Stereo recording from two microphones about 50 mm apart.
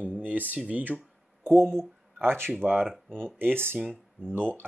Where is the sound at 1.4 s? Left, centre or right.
Right.